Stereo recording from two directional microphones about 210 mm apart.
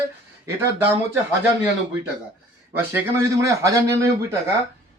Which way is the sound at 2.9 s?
15° right (ahead or behind).